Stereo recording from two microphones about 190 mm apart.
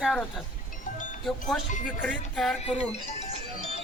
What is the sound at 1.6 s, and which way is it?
Speech, 40° left (ahead or behind).